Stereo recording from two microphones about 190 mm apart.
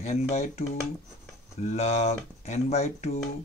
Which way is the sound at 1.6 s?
35° left (ahead or behind).